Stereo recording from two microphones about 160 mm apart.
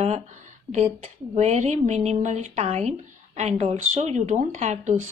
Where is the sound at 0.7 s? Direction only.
15° right (ahead or behind).